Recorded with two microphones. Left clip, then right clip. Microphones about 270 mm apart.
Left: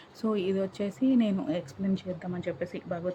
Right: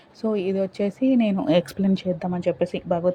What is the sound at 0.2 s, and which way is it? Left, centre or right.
A woman's voice, centre.